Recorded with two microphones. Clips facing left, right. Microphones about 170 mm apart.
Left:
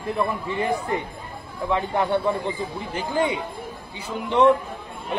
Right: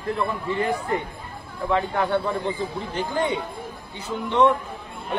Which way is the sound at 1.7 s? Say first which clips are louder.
Even; 15° left (ahead or behind).